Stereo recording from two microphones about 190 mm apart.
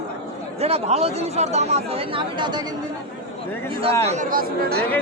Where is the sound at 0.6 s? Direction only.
35° right (ahead or behind).